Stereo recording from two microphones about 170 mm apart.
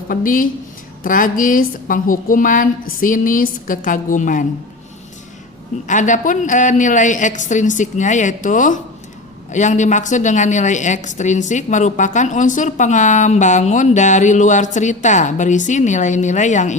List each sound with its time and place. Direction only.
0.1 s a woman's voice: 55° left (ahead or behind)
5.9 s a woman's voice: 45° left (ahead or behind)